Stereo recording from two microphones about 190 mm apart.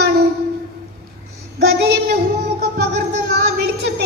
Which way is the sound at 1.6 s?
60° right (ahead or behind).